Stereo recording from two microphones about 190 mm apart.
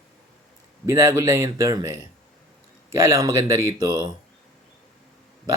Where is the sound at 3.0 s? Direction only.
15° right (ahead or behind).